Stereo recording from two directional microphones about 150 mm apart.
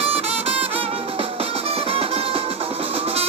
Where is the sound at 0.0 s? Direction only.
40° right (ahead or behind).